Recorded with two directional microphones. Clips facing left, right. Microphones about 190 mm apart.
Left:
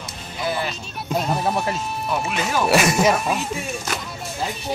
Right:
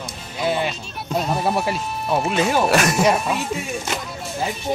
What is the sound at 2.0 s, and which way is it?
Speech, 30° right (ahead or behind).